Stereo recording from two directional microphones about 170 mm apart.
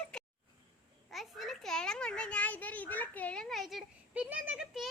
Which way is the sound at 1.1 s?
Centre (ahead or behind).